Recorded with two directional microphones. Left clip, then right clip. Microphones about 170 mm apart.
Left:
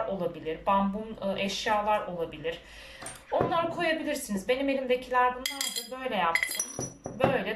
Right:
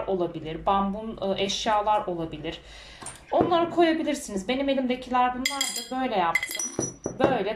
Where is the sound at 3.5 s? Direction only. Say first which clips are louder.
Right 6 dB; 20° right (ahead or behind).